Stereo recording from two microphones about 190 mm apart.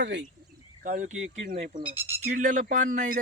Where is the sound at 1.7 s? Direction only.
30° right (ahead or behind).